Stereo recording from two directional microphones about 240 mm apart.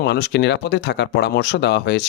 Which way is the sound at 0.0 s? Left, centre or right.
Left.